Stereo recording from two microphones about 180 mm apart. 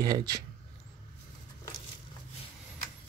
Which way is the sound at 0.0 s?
20° right (ahead or behind).